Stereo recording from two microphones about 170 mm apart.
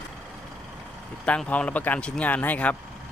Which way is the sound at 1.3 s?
10° left (ahead or behind).